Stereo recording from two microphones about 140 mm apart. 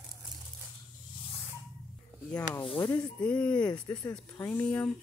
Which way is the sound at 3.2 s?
10° left (ahead or behind).